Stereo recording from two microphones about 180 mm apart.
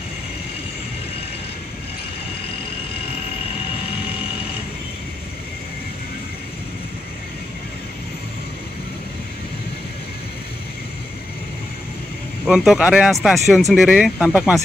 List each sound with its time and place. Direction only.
12.4 s speech: centre (ahead or behind)